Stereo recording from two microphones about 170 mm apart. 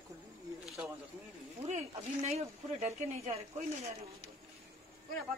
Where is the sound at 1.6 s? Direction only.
40° right (ahead or behind).